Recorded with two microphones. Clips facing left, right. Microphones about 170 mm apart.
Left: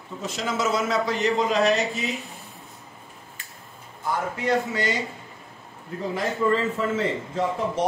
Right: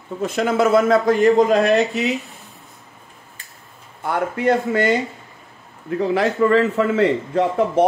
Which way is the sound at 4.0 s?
60° right (ahead or behind).